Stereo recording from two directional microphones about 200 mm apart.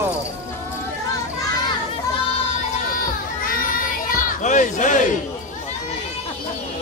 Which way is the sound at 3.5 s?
45° left (ahead or behind).